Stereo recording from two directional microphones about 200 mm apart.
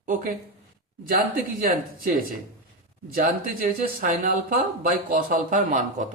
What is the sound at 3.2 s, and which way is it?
Speech, 45° right (ahead or behind).